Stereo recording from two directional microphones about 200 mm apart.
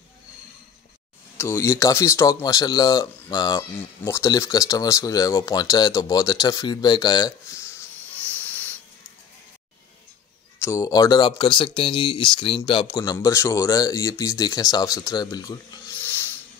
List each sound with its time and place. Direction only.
1.4 s speech: 15° left (ahead or behind)
10.6 s speech: 15° left (ahead or behind)
16.0 s a sound: 10° left (ahead or behind)